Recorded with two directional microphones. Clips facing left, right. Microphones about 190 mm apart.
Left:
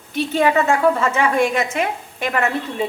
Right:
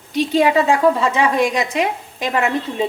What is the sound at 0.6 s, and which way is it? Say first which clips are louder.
A woman's voice: right 2 dB; 15° right (ahead or behind).